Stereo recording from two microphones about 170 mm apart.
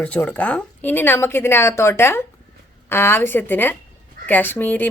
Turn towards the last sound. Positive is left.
turn(degrees=10)  # may be behind; listen again after turning